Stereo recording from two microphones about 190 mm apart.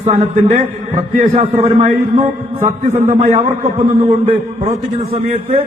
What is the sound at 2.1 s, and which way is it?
Speech, 15° right (ahead or behind).